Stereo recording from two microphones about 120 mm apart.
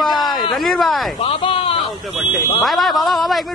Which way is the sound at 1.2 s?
50° left (ahead or behind).